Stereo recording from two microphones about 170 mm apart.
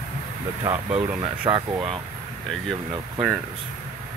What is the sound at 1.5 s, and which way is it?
Speech, 25° right (ahead or behind).